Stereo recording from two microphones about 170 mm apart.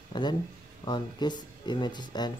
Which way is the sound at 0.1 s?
25° left (ahead or behind).